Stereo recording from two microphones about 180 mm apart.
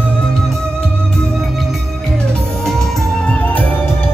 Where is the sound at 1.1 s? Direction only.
5° left (ahead or behind).